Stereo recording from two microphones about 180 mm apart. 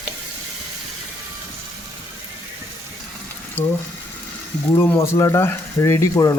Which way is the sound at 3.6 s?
10° left (ahead or behind).